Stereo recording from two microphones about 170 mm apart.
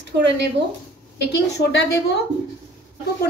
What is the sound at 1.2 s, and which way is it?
Speech, 80° left.